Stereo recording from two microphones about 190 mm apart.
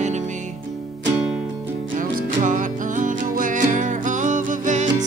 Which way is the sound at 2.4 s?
40° right (ahead or behind).